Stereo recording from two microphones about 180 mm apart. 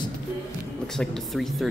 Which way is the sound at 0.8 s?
5° left (ahead or behind).